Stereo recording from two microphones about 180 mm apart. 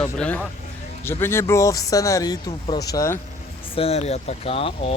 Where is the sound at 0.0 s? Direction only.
5° left (ahead or behind).